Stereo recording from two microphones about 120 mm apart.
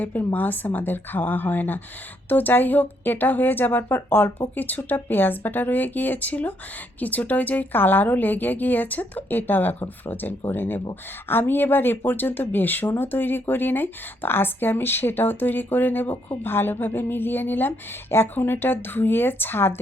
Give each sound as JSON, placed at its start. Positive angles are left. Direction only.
{"t": 0.0, "sound": "speech", "side_deg": 15}